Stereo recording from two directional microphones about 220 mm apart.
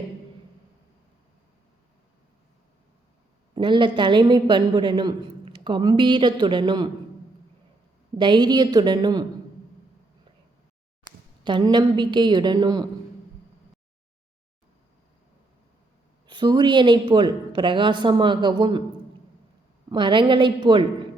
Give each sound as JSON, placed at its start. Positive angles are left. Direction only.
{"t": 3.5, "sound": "a woman's voice", "side_deg": -20}
{"t": 8.2, "sound": "a woman's voice", "side_deg": -20}
{"t": 11.4, "sound": "a woman's voice", "side_deg": -20}
{"t": 16.2, "sound": "a woman's voice", "side_deg": -20}
{"t": 19.9, "sound": "a woman's voice", "side_deg": -20}